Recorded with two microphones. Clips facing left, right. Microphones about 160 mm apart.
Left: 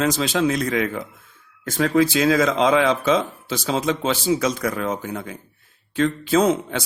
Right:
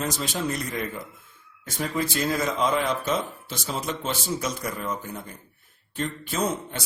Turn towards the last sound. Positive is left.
turn(degrees=90)